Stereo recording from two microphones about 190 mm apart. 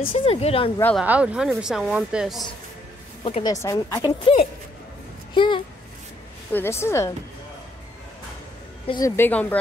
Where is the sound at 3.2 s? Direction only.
30° left (ahead or behind).